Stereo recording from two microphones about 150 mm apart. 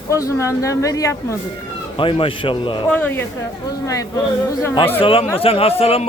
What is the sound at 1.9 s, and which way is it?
Speech, 35° left (ahead or behind).